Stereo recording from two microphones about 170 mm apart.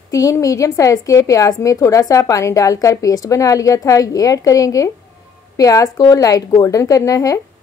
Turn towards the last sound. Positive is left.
turn(degrees=20)  # may be behind; listen again after turning